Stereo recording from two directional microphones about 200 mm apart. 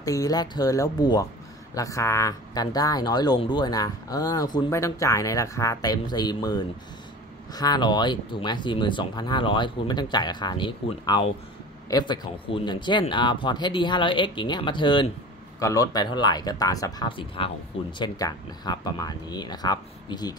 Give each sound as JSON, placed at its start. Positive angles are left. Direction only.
{"t": 0.0, "sound": "speech", "side_deg": 15}